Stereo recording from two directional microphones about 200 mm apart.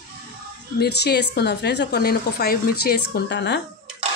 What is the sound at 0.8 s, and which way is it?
Speech, 55° left (ahead or behind).